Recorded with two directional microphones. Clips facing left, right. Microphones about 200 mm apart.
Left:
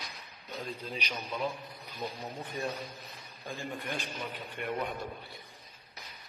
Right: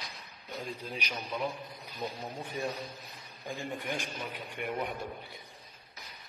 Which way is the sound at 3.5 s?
15° right (ahead or behind).